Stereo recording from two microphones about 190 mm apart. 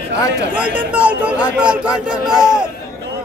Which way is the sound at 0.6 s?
10° right (ahead or behind).